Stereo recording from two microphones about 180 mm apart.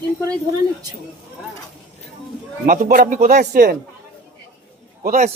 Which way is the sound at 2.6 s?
50° right (ahead or behind).